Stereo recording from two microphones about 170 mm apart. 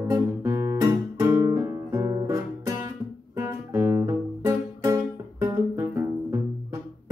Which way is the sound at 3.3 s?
15° right (ahead or behind).